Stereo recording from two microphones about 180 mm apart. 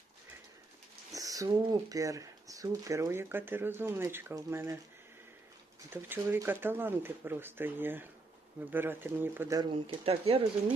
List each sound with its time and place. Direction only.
1.1 s speech: 20° right (ahead or behind)
5.9 s speech: 10° right (ahead or behind)
9.7 s speech: 35° right (ahead or behind)